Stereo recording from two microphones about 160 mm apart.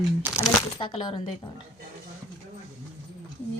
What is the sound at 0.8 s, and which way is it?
Speech, 30° left (ahead or behind).